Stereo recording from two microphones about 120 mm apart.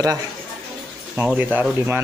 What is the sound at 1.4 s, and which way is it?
Speech, 15° right (ahead or behind).